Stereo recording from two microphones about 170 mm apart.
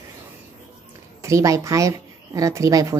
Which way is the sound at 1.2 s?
15° right (ahead or behind).